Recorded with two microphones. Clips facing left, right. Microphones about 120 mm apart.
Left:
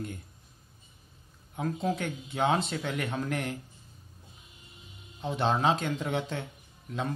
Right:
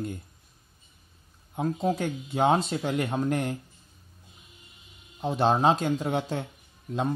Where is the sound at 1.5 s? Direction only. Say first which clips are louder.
Right 4 dB; 30° right (ahead or behind).